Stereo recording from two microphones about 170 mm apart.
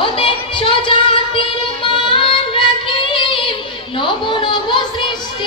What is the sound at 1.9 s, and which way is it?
Child singing, 30° left (ahead or behind).